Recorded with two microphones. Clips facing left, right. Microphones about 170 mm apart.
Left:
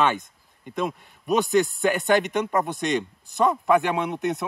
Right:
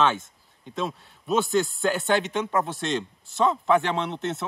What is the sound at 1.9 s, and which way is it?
Speech, 15° left (ahead or behind).